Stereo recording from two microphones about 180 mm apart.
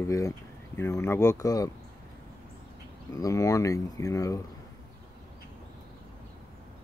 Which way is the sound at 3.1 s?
20° left (ahead or behind).